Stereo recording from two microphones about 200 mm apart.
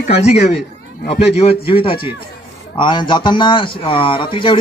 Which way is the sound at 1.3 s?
30° left (ahead or behind).